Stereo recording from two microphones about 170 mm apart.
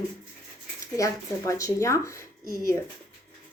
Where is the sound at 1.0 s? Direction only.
20° left (ahead or behind).